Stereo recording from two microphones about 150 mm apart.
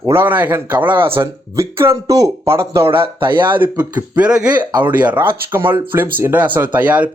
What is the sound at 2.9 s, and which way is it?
Speech, 35° right (ahead or behind).